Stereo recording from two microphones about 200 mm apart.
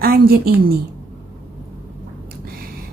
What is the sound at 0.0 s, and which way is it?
Speech, 50° right (ahead or behind).